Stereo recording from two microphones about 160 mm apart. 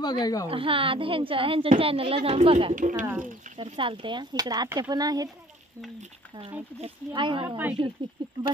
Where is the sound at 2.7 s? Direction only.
55° right (ahead or behind).